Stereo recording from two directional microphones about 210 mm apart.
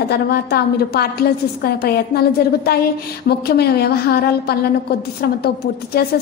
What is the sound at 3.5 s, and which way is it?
A woman's voice, 50° left (ahead or behind).